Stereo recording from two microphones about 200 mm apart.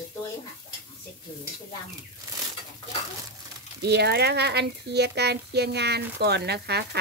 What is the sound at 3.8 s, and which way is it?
Speech, 55° right (ahead or behind).